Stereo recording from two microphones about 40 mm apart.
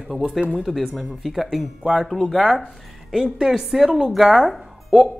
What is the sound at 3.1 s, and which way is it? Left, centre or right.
A woman's voice, centre.